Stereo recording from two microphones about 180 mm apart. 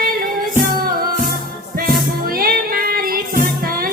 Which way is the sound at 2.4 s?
55° right (ahead or behind).